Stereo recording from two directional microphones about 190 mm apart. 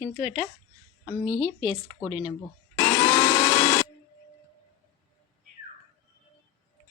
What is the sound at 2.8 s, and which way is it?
Vacuum cleaner, 20° left (ahead or behind).